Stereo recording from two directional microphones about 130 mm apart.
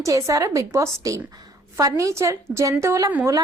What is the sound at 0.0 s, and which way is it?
A woman's voice, 25° right (ahead or behind).